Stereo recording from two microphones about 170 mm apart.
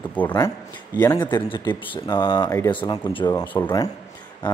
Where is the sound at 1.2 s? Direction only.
25° left (ahead or behind).